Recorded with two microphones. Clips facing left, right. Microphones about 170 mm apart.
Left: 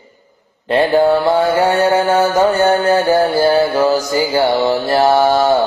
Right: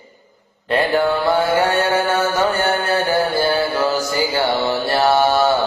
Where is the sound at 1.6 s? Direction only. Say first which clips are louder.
Left 4 dB; 35° left (ahead or behind).